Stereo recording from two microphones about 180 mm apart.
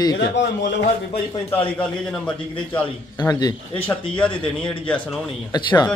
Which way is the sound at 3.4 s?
20° left (ahead or behind).